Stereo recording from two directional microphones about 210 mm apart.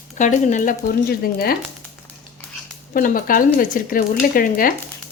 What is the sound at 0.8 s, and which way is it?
Speech, 50° left (ahead or behind).